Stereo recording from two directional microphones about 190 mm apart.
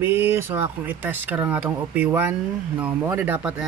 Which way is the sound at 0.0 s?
10° right (ahead or behind).